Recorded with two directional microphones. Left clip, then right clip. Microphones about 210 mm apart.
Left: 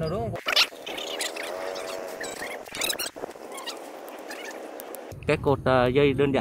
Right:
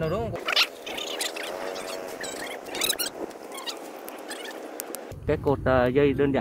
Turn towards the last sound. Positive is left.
turn(degrees=10)  # may be behind; listen again after turning